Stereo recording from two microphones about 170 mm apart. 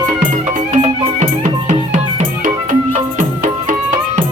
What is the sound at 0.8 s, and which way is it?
Music, 40° right (ahead or behind).